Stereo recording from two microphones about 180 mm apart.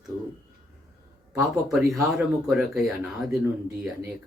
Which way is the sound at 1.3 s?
5° right (ahead or behind).